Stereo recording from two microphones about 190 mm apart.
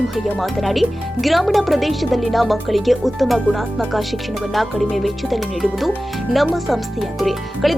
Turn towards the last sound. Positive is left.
turn(degrees=0)  # may be behind; listen again after turning